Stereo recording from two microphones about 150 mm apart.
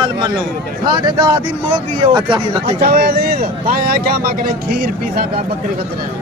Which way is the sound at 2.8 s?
90° right.